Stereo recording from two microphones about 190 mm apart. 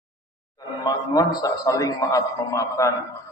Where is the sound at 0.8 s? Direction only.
20° left (ahead or behind).